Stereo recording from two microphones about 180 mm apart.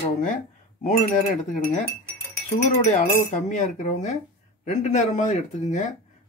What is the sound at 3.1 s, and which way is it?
Speech, 40° left (ahead or behind).